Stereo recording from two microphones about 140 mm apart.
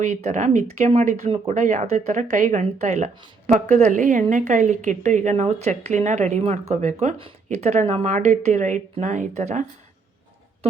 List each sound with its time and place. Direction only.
0.0 s a woman's voice: 60° right (ahead or behind)
0.9 s a woman's voice: 45° right (ahead or behind)